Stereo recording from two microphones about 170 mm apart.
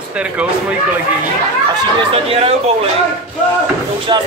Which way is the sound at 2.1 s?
35° right (ahead or behind).